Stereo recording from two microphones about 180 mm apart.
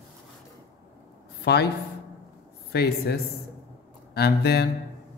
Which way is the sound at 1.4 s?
65° left (ahead or behind).